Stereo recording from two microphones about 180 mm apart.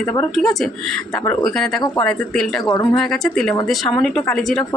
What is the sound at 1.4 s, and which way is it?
Speech, 5° left (ahead or behind).